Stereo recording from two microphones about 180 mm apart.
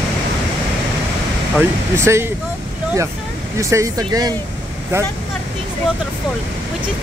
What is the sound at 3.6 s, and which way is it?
Speech, 15° right (ahead or behind).